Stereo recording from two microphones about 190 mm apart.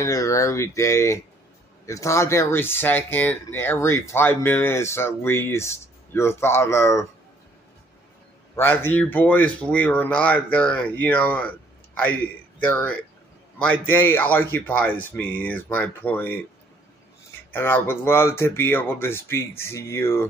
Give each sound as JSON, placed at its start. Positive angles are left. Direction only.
{"t": 0.0, "sound": "speech", "side_deg": 15}
{"t": 8.5, "sound": "speech", "side_deg": 10}
{"t": 17.5, "sound": "speech", "side_deg": 10}